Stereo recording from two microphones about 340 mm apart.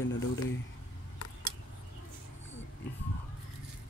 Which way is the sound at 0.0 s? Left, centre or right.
Left.